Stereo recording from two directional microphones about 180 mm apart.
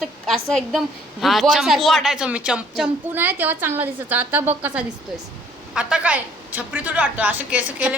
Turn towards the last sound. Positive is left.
turn(degrees=-10)  # may be behind; listen again after turning